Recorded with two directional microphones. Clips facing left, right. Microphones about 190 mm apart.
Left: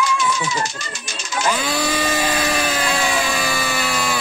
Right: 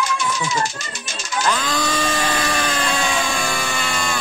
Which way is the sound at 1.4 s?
10° left (ahead or behind).